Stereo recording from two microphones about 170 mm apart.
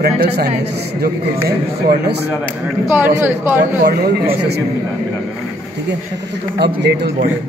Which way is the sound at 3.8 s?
70° right (ahead or behind).